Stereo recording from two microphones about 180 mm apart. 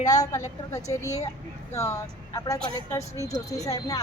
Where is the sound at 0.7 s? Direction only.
15° left (ahead or behind).